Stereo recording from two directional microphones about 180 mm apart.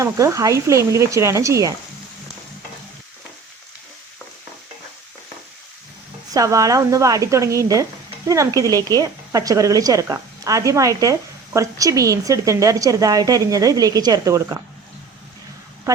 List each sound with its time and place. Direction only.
0.0 s speech: 15° right (ahead or behind)
6.3 s a woman's voice: 20° right (ahead or behind)